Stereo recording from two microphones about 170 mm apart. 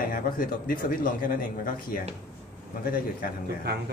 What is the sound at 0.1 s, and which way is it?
A man's voice, 55° left (ahead or behind).